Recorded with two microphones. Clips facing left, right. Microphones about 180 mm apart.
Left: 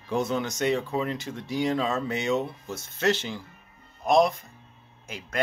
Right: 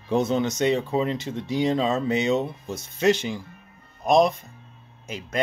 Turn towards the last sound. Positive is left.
turn(degrees=-20)  # may be behind; listen again after turning